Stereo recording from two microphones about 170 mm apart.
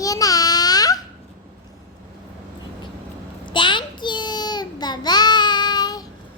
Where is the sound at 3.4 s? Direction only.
30° left (ahead or behind).